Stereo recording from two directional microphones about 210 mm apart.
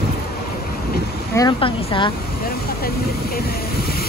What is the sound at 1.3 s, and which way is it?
Speech, 20° left (ahead or behind).